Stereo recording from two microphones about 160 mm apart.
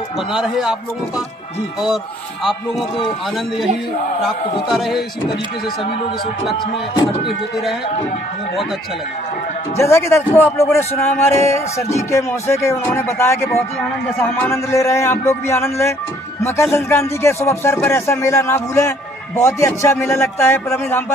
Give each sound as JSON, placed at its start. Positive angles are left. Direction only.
{"t": 0.3, "sound": "speech", "side_deg": -5}
{"t": 4.6, "sound": "speech", "side_deg": 0}
{"t": 9.8, "sound": "a man's voice", "side_deg": 15}